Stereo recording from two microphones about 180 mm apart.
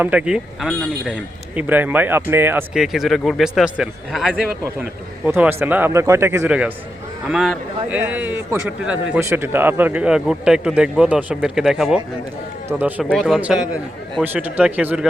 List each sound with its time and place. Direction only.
0.0 s speech: 5° right (ahead or behind)
0.7 s a man's voice: 5° left (ahead or behind)
1.1 s a man's voice: 10° right (ahead or behind)